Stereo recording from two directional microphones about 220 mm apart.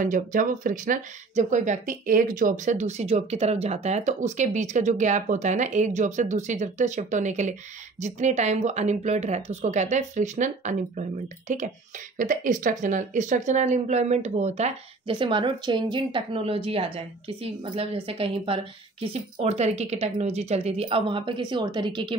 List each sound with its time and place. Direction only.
0.0 s speech: 35° right (ahead or behind); by 22.1 s 20° right (ahead or behind)